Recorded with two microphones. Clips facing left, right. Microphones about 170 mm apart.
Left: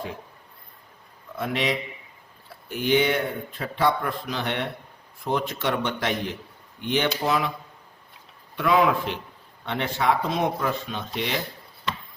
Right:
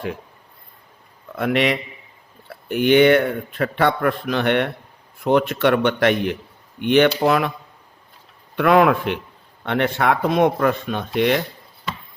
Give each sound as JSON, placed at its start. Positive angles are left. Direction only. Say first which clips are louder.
{"t": 1.4, "sound": "speech", "louder": "right 7 dB", "side_deg": -65}
{"t": 8.5, "sound": "speech", "louder": "right 6 dB", "side_deg": -65}